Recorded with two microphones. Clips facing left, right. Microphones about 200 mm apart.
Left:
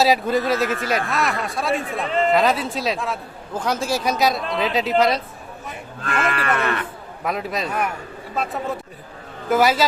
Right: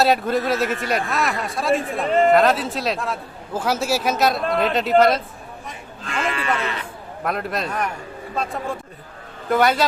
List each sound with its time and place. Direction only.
0.0 s a man's voice: centre (ahead or behind)
6.0 s speech: 60° left (ahead or behind)
7.3 s a man's voice: centre (ahead or behind)
9.5 s a man's voice: centre (ahead or behind)